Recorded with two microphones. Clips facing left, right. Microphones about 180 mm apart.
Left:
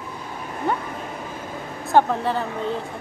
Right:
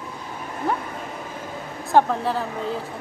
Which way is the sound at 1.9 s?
Centre (ahead or behind).